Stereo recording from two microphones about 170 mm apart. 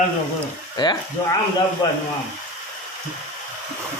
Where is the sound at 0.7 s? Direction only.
25° left (ahead or behind).